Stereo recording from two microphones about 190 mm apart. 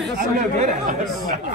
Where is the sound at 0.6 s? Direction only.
45° right (ahead or behind).